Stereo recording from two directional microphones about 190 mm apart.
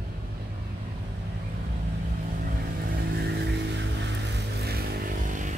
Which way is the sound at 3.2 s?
65° right (ahead or behind).